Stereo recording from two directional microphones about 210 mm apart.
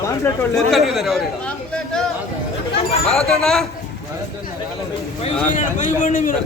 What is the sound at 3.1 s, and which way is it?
Speech, centre (ahead or behind).